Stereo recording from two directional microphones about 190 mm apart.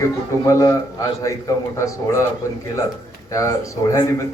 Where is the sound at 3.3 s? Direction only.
15° left (ahead or behind).